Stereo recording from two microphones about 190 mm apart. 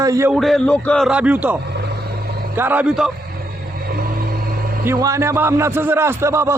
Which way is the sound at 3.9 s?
50° right (ahead or behind).